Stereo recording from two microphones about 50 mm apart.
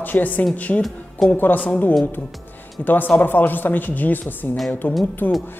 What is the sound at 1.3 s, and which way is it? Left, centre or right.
A woman's voice, left.